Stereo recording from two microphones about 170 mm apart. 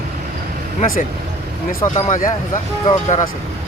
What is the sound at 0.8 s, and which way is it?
Speech, 55° left (ahead or behind).